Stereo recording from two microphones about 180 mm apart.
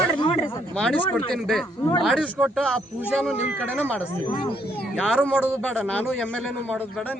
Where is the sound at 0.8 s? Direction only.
5° left (ahead or behind).